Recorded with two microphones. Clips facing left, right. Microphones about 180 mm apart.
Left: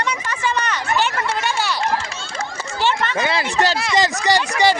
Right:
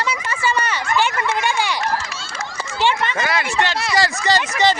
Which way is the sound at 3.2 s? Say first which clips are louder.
Left 2 dB; 30° left (ahead or behind).